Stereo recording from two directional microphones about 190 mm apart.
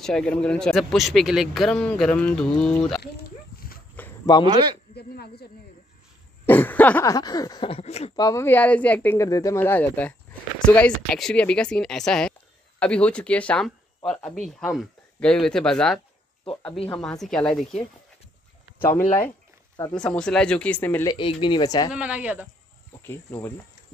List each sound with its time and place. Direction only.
0.0 s speech: 5° left (ahead or behind)
3.0 s a sound: 55° left (ahead or behind)
4.5 s speech: 25° right (ahead or behind)
4.9 s snake: 55° left (ahead or behind)
6.4 s speech: 10° left (ahead or behind); by 8.1 s 35° left (ahead or behind)
8.2 s speech: 15° left (ahead or behind)
18.9 s speech: 15° left (ahead or behind)
21.1 s speech: 25° left (ahead or behind)
21.9 s speech: 5° right (ahead or behind)
23.0 s speech: 10° left (ahead or behind)